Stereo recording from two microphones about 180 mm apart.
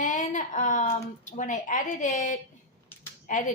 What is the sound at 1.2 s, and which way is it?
A woman's voice, 45° left (ahead or behind).